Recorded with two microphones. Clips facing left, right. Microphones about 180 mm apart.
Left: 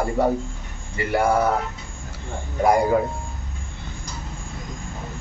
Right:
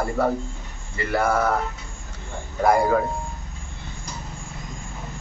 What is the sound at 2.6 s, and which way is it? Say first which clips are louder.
Speech: left 1 dB; 20° left (ahead or behind).